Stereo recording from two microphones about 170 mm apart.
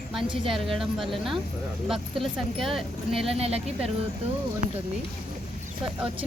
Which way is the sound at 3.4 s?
35° right (ahead or behind).